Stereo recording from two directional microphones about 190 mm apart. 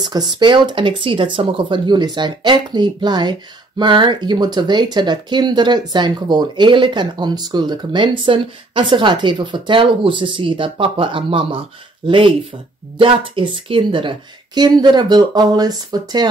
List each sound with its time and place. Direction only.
0.0 s speech: 25° right (ahead or behind)